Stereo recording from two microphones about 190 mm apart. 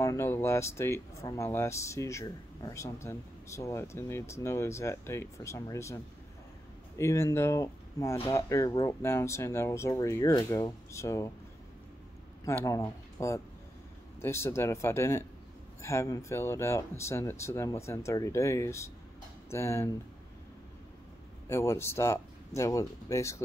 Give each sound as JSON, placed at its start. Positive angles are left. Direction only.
{"t": 0.0, "sound": "speech", "side_deg": 15}
{"t": 7.0, "sound": "speech", "side_deg": 15}
{"t": 12.4, "sound": "speech", "side_deg": 15}
{"t": 21.5, "sound": "speech", "side_deg": 15}